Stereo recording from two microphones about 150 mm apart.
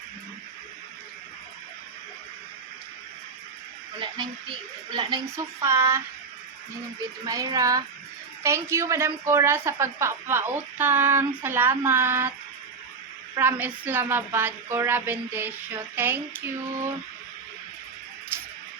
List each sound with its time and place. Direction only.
4.0 s speech: 35° right (ahead or behind)
7.3 s a woman's voice: 25° right (ahead or behind)
13.3 s a woman's voice: 15° right (ahead or behind)